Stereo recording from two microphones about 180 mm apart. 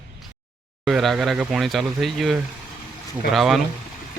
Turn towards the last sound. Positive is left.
turn(degrees=0)  # may be behind; listen again after turning